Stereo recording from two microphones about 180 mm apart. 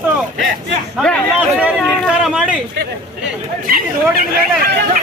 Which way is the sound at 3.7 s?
55° right (ahead or behind).